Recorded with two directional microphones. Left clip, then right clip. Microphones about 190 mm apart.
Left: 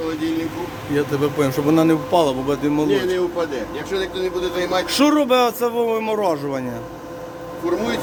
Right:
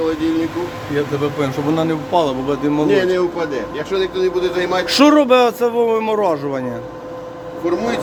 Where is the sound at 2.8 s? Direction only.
50° right (ahead or behind).